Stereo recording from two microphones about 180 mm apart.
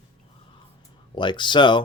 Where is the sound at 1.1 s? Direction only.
25° left (ahead or behind).